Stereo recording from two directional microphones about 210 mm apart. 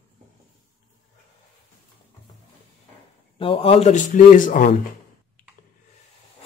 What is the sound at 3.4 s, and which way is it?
Speech, 25° left (ahead or behind).